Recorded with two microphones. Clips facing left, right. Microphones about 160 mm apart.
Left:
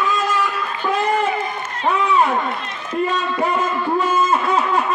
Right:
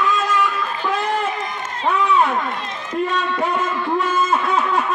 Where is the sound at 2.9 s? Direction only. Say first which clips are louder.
Left 1 dB; centre (ahead or behind).